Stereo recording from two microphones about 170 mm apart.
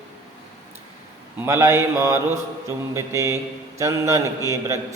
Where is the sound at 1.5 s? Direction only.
15° right (ahead or behind).